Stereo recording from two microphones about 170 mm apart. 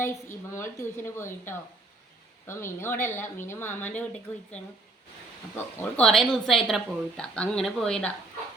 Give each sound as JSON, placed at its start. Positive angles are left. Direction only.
{"t": 0.0, "sound": "a woman's voice", "side_deg": 15}
{"t": 5.5, "sound": "a woman's voice", "side_deg": 5}